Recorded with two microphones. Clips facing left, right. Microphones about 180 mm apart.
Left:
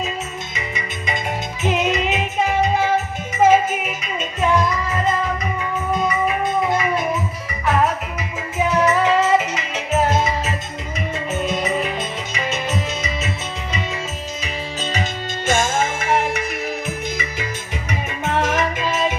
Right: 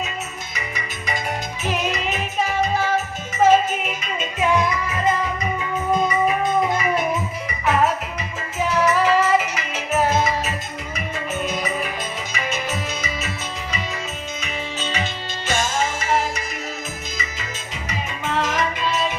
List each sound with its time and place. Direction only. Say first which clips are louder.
0.5 s music: left 3 dB; 20° left (ahead or behind); by 4.4 s centre (ahead or behind)
8.5 s music: left 2 dB; 20° left (ahead or behind)
15.4 s music: left 3 dB; 50° left (ahead or behind)
17.8 s music: left 2 dB; 50° left (ahead or behind)